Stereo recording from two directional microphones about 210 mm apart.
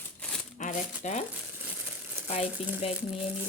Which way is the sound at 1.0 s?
35° left (ahead or behind).